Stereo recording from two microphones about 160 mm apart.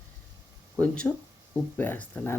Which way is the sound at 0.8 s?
5° left (ahead or behind).